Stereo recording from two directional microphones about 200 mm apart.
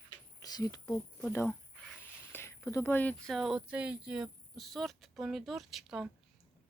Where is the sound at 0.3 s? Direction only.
20° left (ahead or behind).